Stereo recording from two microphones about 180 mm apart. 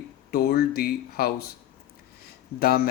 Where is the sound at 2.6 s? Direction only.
60° left (ahead or behind).